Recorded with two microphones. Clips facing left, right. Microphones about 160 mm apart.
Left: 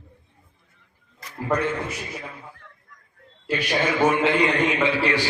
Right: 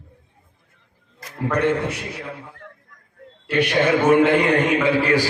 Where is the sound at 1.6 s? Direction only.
70° right (ahead or behind); by 5.3 s 45° right (ahead or behind).